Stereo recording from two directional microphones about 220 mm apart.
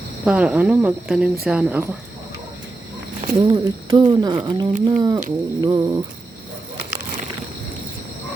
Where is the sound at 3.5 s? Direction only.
20° right (ahead or behind).